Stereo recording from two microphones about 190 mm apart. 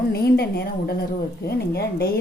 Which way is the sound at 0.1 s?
55° left (ahead or behind).